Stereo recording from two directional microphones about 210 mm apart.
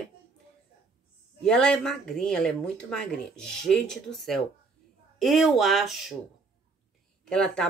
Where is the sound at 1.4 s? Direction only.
5° left (ahead or behind).